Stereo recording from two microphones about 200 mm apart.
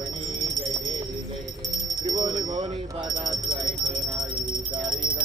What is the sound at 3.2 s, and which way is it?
Alarm, 20° right (ahead or behind).